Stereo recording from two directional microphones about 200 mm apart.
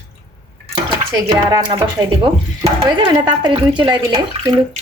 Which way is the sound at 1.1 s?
15° right (ahead or behind).